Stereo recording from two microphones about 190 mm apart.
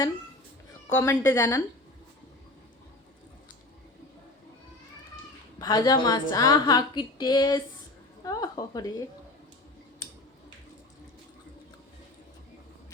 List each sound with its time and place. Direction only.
0.9 s a woman's voice: 15° left (ahead or behind)
5.5 s a woman's voice: 20° left (ahead or behind)